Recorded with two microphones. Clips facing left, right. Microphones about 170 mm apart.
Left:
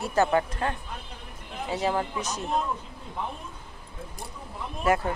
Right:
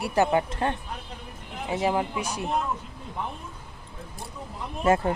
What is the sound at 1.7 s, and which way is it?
Speech, 15° right (ahead or behind).